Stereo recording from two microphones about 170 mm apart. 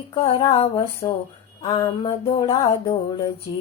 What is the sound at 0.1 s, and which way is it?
Music, 30° left (ahead or behind).